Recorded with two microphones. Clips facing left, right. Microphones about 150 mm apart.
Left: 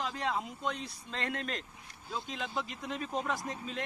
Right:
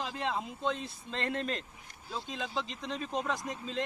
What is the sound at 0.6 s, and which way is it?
Speech, 25° right (ahead or behind).